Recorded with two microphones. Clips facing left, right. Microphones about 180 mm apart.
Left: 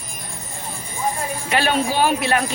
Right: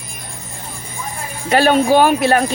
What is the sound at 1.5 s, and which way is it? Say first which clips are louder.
Speech: right 8 dB; 40° right (ahead or behind).